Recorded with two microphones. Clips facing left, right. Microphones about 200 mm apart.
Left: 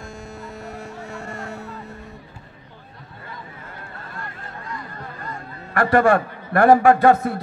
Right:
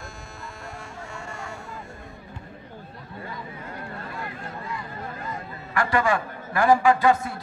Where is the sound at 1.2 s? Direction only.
60° left (ahead or behind).